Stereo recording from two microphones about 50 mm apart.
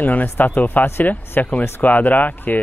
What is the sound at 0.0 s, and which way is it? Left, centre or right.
Speech, left.